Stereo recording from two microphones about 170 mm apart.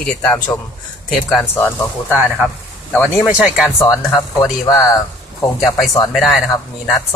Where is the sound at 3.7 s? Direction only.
20° left (ahead or behind).